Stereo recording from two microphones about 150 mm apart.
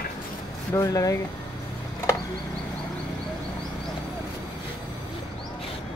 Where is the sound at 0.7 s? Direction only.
20° left (ahead or behind).